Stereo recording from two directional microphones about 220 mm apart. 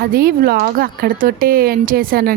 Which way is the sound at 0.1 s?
40° right (ahead or behind).